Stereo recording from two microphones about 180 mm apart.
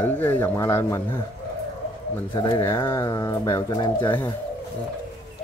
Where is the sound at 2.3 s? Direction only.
25° left (ahead or behind).